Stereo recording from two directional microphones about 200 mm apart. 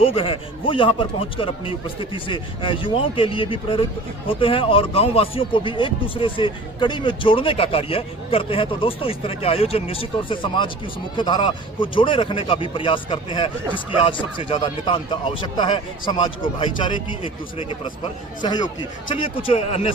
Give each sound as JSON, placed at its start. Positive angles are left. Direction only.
{"t": 0.0, "sound": "speech", "side_deg": 25}